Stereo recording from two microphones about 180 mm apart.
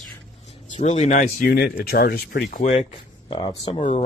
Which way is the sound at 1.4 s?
60° left (ahead or behind).